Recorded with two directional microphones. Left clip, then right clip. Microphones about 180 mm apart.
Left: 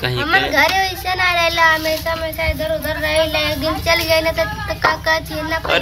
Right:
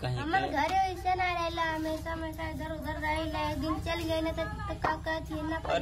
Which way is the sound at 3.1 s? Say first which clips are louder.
Left 16 dB; 25° right (ahead or behind).